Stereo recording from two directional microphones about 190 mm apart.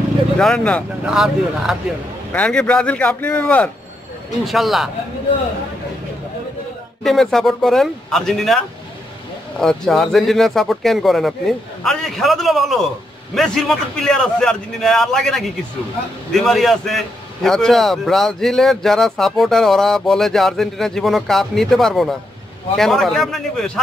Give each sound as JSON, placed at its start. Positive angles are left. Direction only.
{"t": 0.4, "sound": "a man's voice", "side_deg": 5}
{"t": 7.0, "sound": "a man's voice", "side_deg": 0}